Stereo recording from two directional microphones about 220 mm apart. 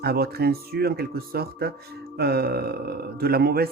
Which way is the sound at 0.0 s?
45° right (ahead or behind).